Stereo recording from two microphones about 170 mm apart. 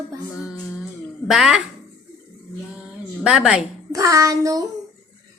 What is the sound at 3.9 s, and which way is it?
Child singing, 20° right (ahead or behind).